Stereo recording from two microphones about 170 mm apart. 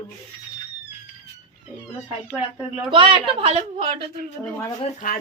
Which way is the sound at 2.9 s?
30° right (ahead or behind).